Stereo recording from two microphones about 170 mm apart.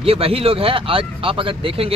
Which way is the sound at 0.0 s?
35° right (ahead or behind).